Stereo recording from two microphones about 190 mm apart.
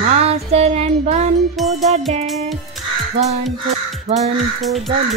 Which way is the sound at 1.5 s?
Centre (ahead or behind).